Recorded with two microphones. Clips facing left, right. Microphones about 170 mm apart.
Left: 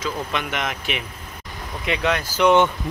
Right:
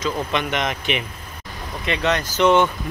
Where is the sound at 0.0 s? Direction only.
5° left (ahead or behind).